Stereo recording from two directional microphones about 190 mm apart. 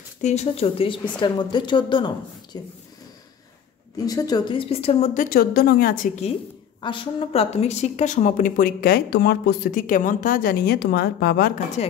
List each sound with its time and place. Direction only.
0.2 s speech: 35° left (ahead or behind)
4.0 s speech: 20° left (ahead or behind); by 5.9 s 50° left (ahead or behind)
6.8 s speech: 25° left (ahead or behind); by 11.5 s 55° left (ahead or behind)
11.8 s speech: 35° left (ahead or behind)